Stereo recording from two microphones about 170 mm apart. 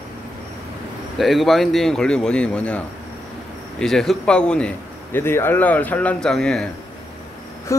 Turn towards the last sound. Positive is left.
turn(degrees=20)  # may be behind; listen again after turning